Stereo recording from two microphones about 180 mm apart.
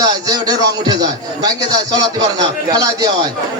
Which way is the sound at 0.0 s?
20° right (ahead or behind).